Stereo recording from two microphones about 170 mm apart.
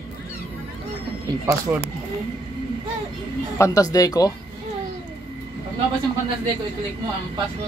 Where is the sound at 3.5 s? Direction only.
15° left (ahead or behind).